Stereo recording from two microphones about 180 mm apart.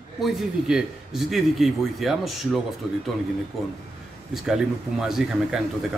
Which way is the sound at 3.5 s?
Centre (ahead or behind).